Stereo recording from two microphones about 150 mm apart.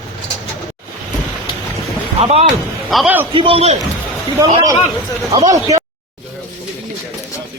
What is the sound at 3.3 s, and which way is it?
Speech, 35° right (ahead or behind).